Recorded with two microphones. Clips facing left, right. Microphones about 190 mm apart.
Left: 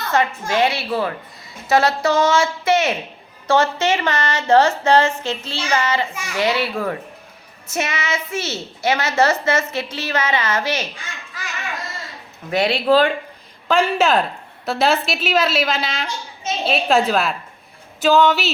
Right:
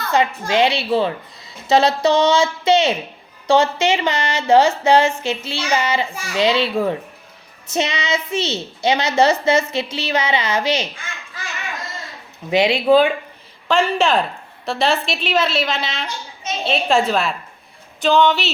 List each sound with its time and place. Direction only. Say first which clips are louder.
0.1 s a woman's voice: right 2 dB; 15° right (ahead or behind)
12.5 s a woman's voice: right 2 dB; 10° right (ahead or behind)